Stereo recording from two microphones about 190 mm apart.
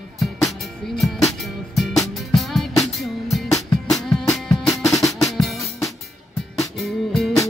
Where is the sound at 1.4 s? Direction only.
Centre (ahead or behind).